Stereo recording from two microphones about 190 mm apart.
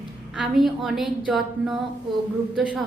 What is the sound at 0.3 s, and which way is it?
A woman's voice, centre (ahead or behind).